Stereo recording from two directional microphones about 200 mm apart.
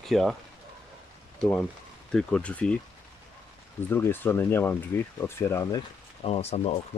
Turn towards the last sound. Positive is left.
turn(degrees=30)  # may be behind; listen again after turning